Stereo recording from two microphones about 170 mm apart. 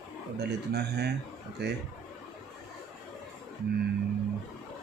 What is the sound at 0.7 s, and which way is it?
Speech, 75° right (ahead or behind).